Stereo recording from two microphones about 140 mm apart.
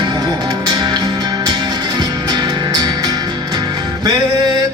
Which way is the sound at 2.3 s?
30° right (ahead or behind).